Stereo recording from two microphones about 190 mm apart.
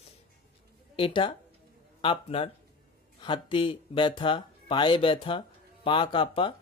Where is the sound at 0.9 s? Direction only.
25° left (ahead or behind).